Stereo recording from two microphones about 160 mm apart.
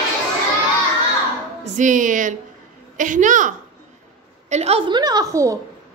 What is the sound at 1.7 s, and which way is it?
A woman's voice, 55° right (ahead or behind).